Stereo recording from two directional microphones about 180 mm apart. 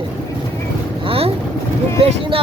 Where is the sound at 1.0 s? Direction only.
30° right (ahead or behind).